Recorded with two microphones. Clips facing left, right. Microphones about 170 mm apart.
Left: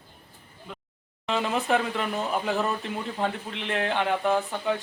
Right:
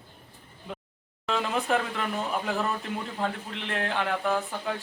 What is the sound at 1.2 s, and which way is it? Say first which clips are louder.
Speech: left 2 dB; 5° left (ahead or behind).